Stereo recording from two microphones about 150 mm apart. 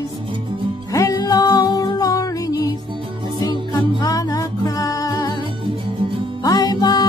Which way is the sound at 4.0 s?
25° left (ahead or behind).